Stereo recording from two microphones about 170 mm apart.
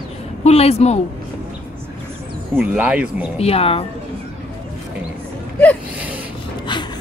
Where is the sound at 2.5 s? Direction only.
10° right (ahead or behind).